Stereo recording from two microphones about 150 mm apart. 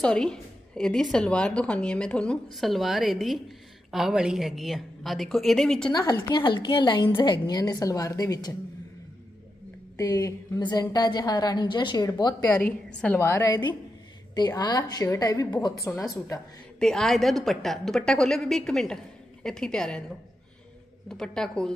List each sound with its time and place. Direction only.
0.0 s a woman's voice: 5° left (ahead or behind)
5.9 s a woman's voice: 30° left (ahead or behind)
9.9 s a woman's voice: 20° left (ahead or behind)
13.0 s a woman's voice: 15° left (ahead or behind)
16.8 s a woman's voice: 5° left (ahead or behind)
21.1 s a woman's voice: 5° left (ahead or behind)